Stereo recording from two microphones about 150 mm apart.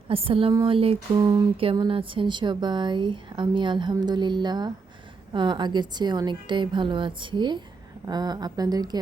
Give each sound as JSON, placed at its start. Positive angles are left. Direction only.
{"t": 0.1, "sound": "speech", "side_deg": -40}
{"t": 1.2, "sound": "a woman's voice", "side_deg": -25}